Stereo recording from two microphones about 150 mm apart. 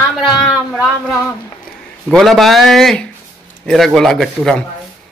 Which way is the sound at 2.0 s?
Centre (ahead or behind).